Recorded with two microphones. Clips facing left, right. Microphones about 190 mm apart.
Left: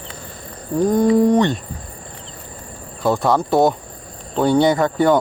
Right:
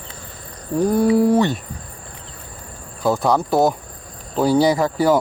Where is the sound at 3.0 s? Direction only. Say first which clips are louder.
Left 1 dB; centre (ahead or behind).